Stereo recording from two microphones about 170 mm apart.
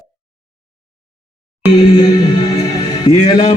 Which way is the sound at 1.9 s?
25° left (ahead or behind).